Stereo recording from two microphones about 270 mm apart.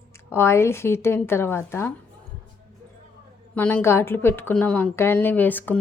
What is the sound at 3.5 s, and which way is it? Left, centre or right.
A woman's voice, centre.